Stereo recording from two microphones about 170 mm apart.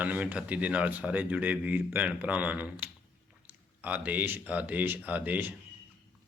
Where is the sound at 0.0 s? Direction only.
10° right (ahead or behind).